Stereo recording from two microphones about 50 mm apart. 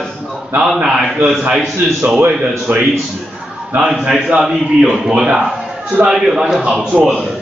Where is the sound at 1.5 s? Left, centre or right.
Centre.